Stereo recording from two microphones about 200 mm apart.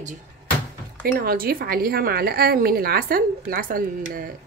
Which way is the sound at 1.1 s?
45° right (ahead or behind).